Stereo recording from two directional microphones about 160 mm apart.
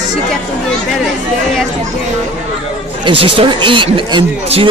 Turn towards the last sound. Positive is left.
turn(degrees=-35)  # may be behind; listen again after turning